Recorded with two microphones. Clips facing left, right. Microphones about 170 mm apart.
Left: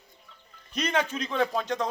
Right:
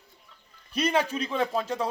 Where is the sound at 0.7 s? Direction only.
10° right (ahead or behind).